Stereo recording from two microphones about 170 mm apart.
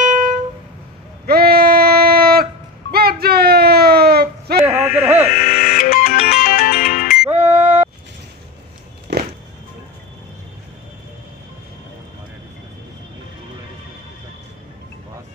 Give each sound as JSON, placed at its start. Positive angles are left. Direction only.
{"t": 0.0, "sound": "music", "side_deg": -50}
{"t": 1.2, "sound": "a sound", "side_deg": -65}
{"t": 4.6, "sound": "sheep", "side_deg": -5}
{"t": 5.4, "sound": "music", "side_deg": 65}
{"t": 7.4, "sound": "a sound", "side_deg": -10}
{"t": 9.1, "sound": "music", "side_deg": -85}